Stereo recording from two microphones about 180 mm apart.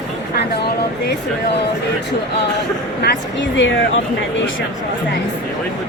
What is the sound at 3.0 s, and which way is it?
Speech, 90° left.